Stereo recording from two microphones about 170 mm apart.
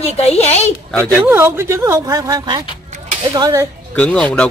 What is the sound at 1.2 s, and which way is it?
A woman's voice, 15° right (ahead or behind).